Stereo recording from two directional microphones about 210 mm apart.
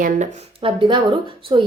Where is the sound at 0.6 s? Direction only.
25° right (ahead or behind).